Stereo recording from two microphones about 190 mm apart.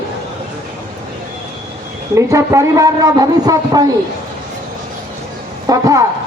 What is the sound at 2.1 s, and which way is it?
A man's voice, 15° right (ahead or behind).